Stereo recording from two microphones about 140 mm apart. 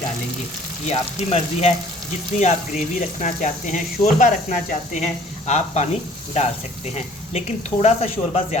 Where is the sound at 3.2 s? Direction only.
60° left (ahead or behind).